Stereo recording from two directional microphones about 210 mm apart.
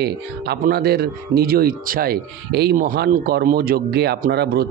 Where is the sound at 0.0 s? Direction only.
50° right (ahead or behind).